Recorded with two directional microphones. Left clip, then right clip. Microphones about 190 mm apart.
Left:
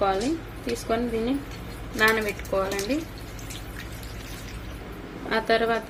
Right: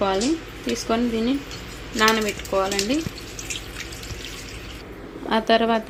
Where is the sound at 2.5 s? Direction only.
30° right (ahead or behind).